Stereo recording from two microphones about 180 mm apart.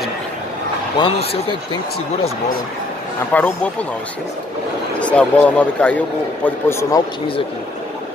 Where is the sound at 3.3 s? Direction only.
5° left (ahead or behind).